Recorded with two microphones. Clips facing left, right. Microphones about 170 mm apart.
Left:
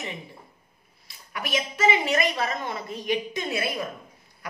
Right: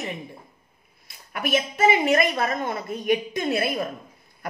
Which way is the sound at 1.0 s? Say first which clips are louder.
Right 6 dB; 50° right (ahead or behind).